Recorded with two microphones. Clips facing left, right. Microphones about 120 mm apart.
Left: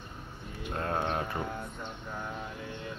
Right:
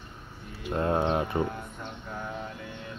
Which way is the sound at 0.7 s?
15° right (ahead or behind).